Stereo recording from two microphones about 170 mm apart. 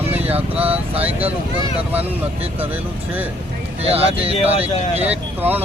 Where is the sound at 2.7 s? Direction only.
10° right (ahead or behind).